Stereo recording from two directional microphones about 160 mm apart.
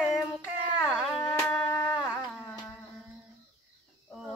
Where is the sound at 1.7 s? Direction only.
10° left (ahead or behind).